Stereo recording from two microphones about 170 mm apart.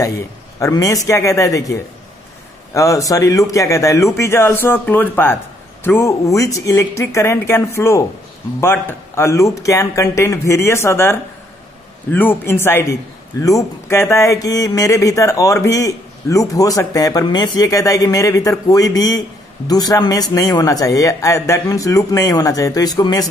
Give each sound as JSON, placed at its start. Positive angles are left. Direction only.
{"t": 0.6, "sound": "a man's voice", "side_deg": 20}